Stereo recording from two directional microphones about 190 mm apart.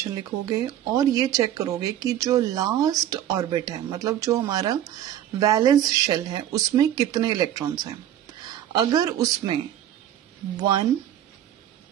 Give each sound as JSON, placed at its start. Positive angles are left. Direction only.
{"t": 0.1, "sound": "speech", "side_deg": -20}